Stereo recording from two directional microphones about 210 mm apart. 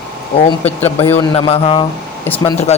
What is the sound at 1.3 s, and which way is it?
Speech, 30° left (ahead or behind).